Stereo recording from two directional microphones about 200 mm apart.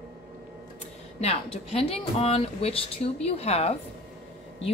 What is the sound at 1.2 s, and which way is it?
A woman's voice, 30° left (ahead or behind).